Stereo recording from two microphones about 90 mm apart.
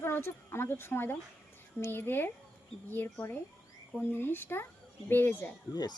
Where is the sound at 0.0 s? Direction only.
25° left (ahead or behind).